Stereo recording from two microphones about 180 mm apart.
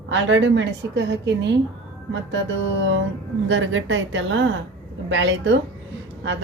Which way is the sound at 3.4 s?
90° right.